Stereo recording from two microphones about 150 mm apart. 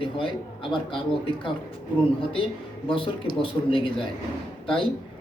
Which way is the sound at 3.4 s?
35° left (ahead or behind).